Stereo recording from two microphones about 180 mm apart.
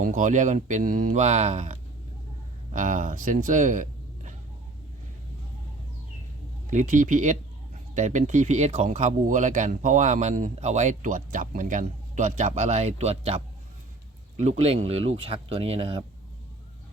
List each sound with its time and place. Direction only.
0.0 s speech: 45° right (ahead or behind)
6.7 s speech: 45° right (ahead or behind)